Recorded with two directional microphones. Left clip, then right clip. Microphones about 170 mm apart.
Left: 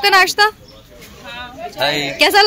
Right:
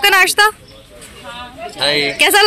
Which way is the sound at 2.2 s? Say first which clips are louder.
Even; 5° right (ahead or behind).